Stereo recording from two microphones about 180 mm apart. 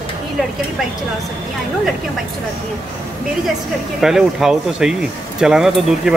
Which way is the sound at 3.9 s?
Centre (ahead or behind).